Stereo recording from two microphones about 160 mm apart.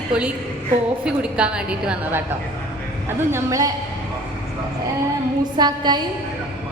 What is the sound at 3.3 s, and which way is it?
Speech, 20° right (ahead or behind).